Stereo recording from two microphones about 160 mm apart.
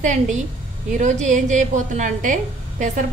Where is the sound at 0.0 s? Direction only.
50° right (ahead or behind).